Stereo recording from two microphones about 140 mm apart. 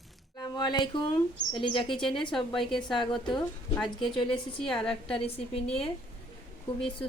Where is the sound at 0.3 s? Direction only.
30° left (ahead or behind).